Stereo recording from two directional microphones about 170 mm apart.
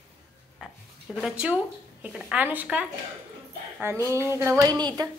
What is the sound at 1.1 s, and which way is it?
A woman's voice, 5° right (ahead or behind).